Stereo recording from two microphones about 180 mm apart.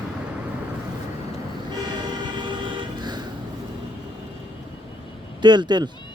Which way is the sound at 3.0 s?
25° right (ahead or behind).